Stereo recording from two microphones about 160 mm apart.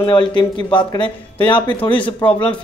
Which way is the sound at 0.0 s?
30° left (ahead or behind).